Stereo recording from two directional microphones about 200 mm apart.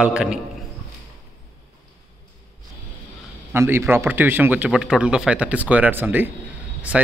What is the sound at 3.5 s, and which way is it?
A man's voice, 10° right (ahead or behind).